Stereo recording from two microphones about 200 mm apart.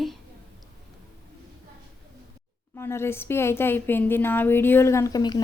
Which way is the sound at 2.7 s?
15° left (ahead or behind).